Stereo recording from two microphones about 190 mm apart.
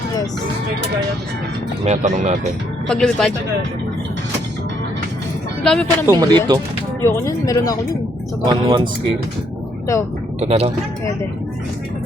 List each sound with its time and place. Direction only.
1.8 s speech: 40° right (ahead or behind)
2.8 s speech: 5° left (ahead or behind)
5.6 s speech: 5° left (ahead or behind)
6.1 s speech: 20° right (ahead or behind)
7.0 s speech: 15° left (ahead or behind)
8.4 s speech: 25° right (ahead or behind)
9.9 s speech: 15° left (ahead or behind)
10.4 s speech: 35° right (ahead or behind)